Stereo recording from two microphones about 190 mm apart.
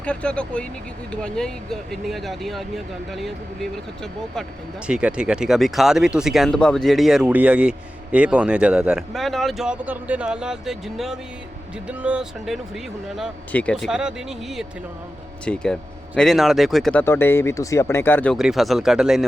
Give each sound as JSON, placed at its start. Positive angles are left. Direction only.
{"t": 0.0, "sound": "speech", "side_deg": 5}
{"t": 18.3, "sound": "speech", "side_deg": 0}